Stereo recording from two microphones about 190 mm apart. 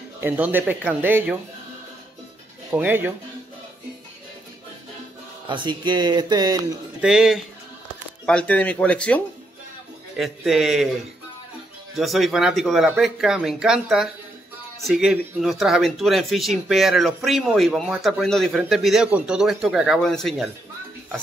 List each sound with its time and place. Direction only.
0.2 s speech: 10° right (ahead or behind)
2.7 s speech: 10° right (ahead or behind)
5.5 s speech: 25° right (ahead or behind)
7.0 s speech: centre (ahead or behind)
12.0 s speech: centre (ahead or behind)